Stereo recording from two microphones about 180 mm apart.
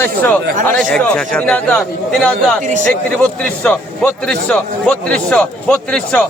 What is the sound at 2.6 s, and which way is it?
Speech, 45° right (ahead or behind).